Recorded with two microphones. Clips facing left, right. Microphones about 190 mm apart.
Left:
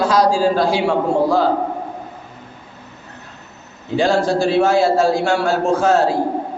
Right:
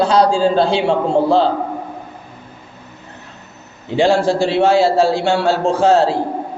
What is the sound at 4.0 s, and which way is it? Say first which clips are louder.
A man's voice: right 2 dB; 25° right (ahead or behind).